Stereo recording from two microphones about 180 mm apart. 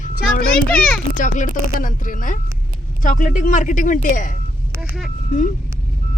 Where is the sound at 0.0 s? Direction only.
55° left (ahead or behind).